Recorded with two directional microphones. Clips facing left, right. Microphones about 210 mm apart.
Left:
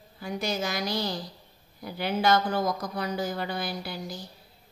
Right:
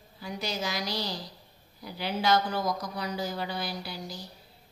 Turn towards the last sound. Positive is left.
turn(degrees=50)  # may be behind; listen again after turning